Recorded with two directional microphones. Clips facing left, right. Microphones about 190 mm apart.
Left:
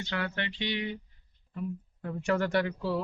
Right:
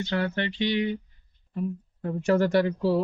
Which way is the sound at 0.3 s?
35° right (ahead or behind).